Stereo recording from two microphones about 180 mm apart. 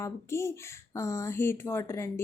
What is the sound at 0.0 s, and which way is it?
A woman's voice, 15° left (ahead or behind).